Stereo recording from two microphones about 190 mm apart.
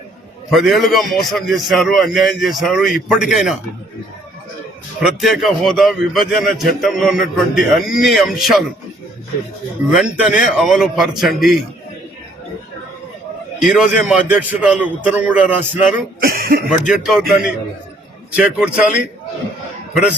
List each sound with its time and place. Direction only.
0.5 s a man's voice: centre (ahead or behind)
4.9 s a man's voice: centre (ahead or behind)
9.9 s a man's voice: 5° right (ahead or behind)
13.6 s a man's voice: 5° right (ahead or behind)
16.2 s speech: 50° right (ahead or behind)
16.9 s a man's voice: 5° right (ahead or behind)